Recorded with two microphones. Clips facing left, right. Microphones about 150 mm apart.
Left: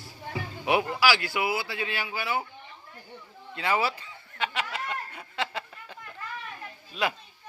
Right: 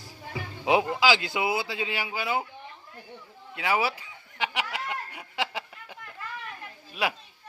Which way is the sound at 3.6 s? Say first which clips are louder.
Even; 10° right (ahead or behind).